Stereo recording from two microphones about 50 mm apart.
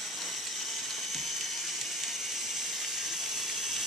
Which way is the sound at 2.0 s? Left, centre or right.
Centre.